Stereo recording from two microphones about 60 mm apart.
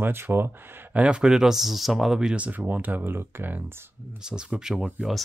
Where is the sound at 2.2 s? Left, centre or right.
Centre; by 3.8 s right.